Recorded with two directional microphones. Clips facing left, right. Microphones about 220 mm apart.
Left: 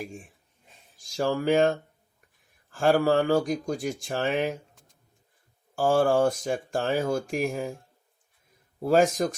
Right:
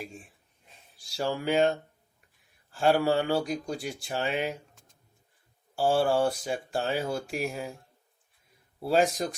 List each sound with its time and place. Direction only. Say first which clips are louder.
0.9 s speech: left 4 dB; 45° left (ahead or behind)
2.7 s speech: left 2 dB; 45° left (ahead or behind)
5.7 s speech: left 3 dB; 45° left (ahead or behind)
8.8 s speech: left 4 dB; 45° left (ahead or behind)